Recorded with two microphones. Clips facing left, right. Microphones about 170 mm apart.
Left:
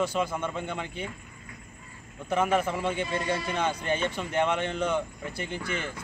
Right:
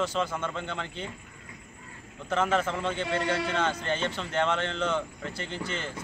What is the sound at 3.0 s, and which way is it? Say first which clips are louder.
Speech: right 1 dB; 70° right (ahead or behind).